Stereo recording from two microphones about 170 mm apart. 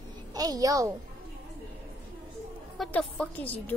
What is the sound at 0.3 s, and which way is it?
Speech, 20° right (ahead or behind).